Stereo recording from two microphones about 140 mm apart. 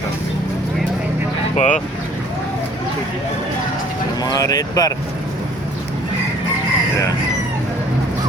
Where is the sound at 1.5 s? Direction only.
65° left (ahead or behind).